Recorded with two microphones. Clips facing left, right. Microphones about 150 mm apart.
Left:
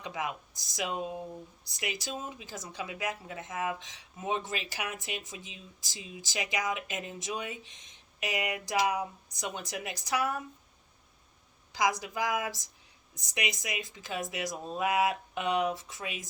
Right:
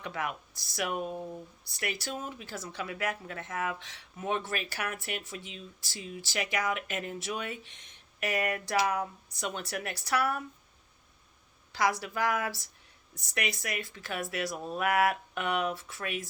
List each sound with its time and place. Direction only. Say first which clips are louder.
0.0 s speech: even; 15° left (ahead or behind)
11.7 s speech: even; 15° left (ahead or behind)